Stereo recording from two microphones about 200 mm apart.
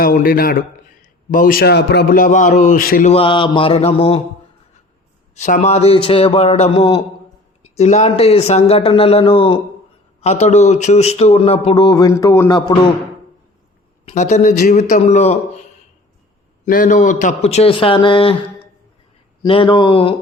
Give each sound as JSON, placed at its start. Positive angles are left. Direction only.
{"t": 0.0, "sound": "a man's voice", "side_deg": 45}
{"t": 3.1, "sound": "a man's voice", "side_deg": 25}
{"t": 5.3, "sound": "a man's voice", "side_deg": 40}
{"t": 14.0, "sound": "a man's voice", "side_deg": 35}
{"t": 16.6, "sound": "a man's voice", "side_deg": 45}